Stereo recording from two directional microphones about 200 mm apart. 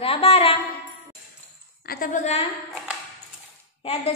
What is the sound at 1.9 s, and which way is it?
Speech, 40° left (ahead or behind).